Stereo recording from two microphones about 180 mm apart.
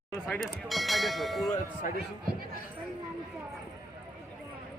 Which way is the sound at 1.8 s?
45° left (ahead or behind).